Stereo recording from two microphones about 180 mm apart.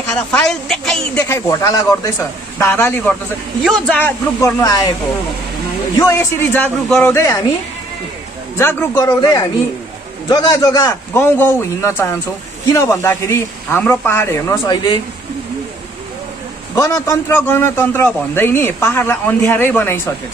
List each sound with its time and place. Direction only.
0.1 s a woman's voice: 5° left (ahead or behind)
1.2 s a man's voice: 20° left (ahead or behind)
4.4 s speech: 15° left (ahead or behind)
5.9 s a man's voice: 15° left (ahead or behind)
8.5 s a man's voice: 15° left (ahead or behind)
16.7 s a man's voice: 15° left (ahead or behind)